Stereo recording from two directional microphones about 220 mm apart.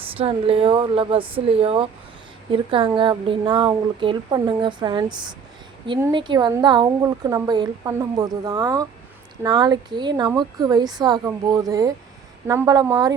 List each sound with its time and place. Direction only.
0.2 s speech: 25° right (ahead or behind)